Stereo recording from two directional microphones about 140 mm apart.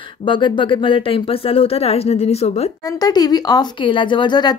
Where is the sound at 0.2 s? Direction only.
35° left (ahead or behind).